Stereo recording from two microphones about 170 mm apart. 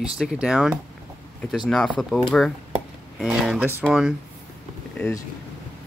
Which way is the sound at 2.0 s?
Centre (ahead or behind).